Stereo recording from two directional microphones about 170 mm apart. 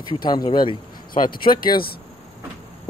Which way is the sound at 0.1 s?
25° left (ahead or behind).